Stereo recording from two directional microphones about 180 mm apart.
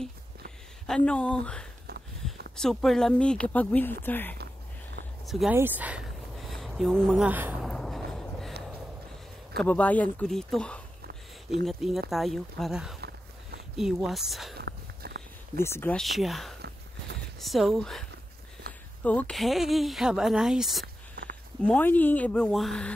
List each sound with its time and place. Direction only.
0.8 s speech: 5° left (ahead or behind)
5.2 s speech: centre (ahead or behind)
5.6 s a sound: 10° right (ahead or behind)
7.0 s speech: centre (ahead or behind)
7.6 s a sound: 5° left (ahead or behind)
9.6 s speech: 10° left (ahead or behind)
14.6 s walk: 65° right (ahead or behind)
15.6 s speech: 10° left (ahead or behind)
20.8 s a sound: 65° right (ahead or behind)
21.6 s speech: 10° left (ahead or behind)